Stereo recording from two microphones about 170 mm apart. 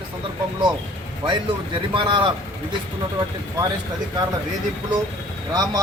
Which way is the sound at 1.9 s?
30° right (ahead or behind).